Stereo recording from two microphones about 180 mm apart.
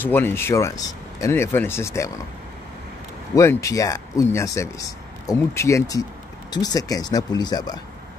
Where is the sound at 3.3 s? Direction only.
15° left (ahead or behind).